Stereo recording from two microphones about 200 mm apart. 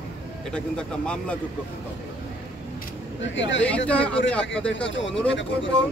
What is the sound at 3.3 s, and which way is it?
Speech, 65° left (ahead or behind).